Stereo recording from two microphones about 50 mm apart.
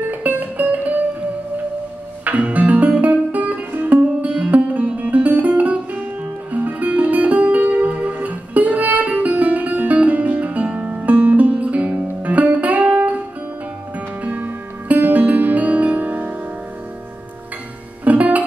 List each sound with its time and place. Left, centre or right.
0.0 s music: right
2.2 s music: right
18.0 s music: right